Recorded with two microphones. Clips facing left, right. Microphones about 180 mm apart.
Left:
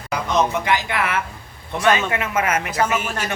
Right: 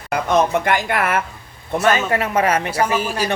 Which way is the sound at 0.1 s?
55° right (ahead or behind).